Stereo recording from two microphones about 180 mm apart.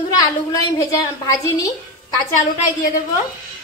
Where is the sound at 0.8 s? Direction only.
15° left (ahead or behind).